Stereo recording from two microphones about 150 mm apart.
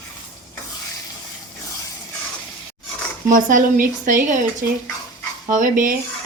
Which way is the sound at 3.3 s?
60° right (ahead or behind).